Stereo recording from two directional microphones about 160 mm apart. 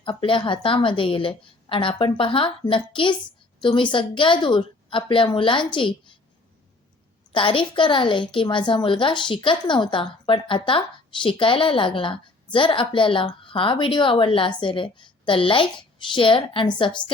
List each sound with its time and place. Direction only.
0.0 s a woman's voice: 30° left (ahead or behind)
7.3 s a woman's voice: 35° left (ahead or behind)